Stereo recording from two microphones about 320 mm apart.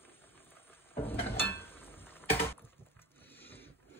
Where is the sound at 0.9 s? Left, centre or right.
Centre.